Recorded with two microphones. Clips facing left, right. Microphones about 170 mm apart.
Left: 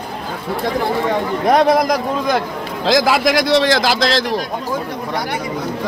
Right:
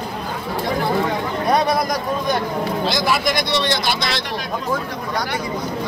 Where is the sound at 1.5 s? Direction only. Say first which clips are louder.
Left 6 dB; 90° left.